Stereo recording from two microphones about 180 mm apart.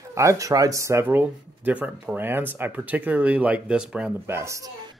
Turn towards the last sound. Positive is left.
turn(degrees=-15)  # may be behind; listen again after turning